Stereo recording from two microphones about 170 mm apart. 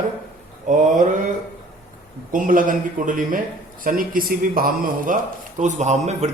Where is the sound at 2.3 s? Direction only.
50° right (ahead or behind).